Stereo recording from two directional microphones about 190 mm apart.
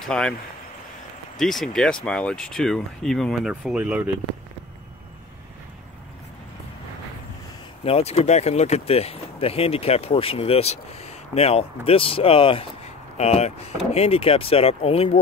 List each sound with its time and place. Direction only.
0.0 s speech: 5° left (ahead or behind)
1.4 s speech: centre (ahead or behind)
7.8 s speech: 30° left (ahead or behind)